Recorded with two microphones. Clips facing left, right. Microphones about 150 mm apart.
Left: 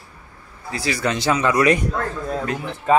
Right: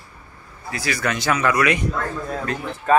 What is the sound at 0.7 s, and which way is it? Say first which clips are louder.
Speech: left 2 dB; 25° left (ahead or behind).